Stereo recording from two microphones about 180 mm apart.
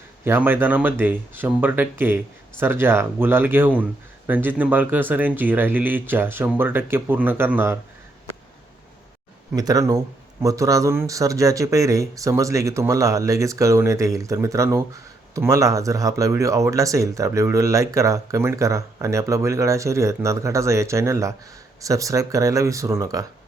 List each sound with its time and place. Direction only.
0.3 s speech: 10° right (ahead or behind)
9.6 s speech: 20° right (ahead or behind)